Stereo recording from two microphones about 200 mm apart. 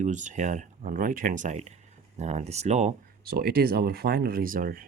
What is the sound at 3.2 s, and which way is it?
Speech, 50° right (ahead or behind).